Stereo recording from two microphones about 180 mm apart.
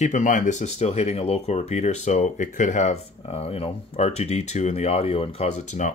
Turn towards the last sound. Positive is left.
turn(degrees=40)  # may be behind; listen again after turning